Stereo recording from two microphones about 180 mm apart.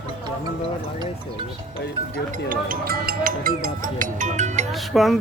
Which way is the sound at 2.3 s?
50° right (ahead or behind).